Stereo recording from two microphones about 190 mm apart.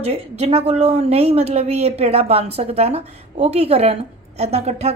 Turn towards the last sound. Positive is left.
turn(degrees=-35)  # may be behind; listen again after turning